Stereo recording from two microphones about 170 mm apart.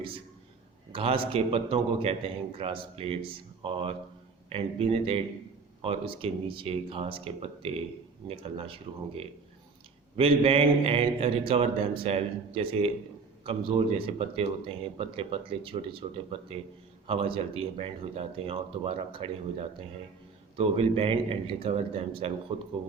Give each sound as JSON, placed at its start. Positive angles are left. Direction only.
{"t": 0.9, "sound": "speech", "side_deg": -35}